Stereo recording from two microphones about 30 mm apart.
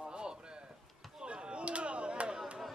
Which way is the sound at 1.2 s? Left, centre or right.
Right.